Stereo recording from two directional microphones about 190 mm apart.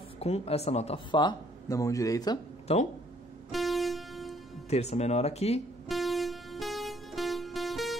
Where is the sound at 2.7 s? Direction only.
35° left (ahead or behind).